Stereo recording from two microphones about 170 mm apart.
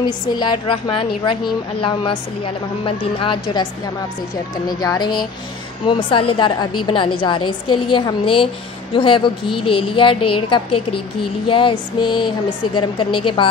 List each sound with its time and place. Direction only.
0.4 s speech: 25° left (ahead or behind)
4.6 s a woman's voice: 25° left (ahead or behind)